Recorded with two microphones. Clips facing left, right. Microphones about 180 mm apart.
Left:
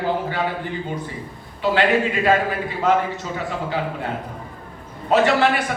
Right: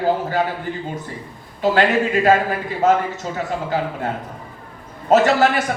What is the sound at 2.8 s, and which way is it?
Speech, 45° right (ahead or behind).